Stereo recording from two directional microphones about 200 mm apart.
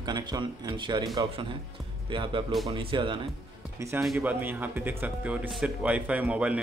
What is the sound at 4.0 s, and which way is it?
Speech, 5° right (ahead or behind).